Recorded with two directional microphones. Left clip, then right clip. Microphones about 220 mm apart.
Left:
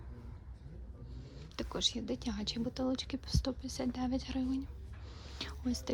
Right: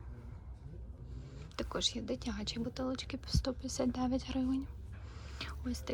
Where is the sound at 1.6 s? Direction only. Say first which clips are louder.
Left 1 dB; 10° left (ahead or behind).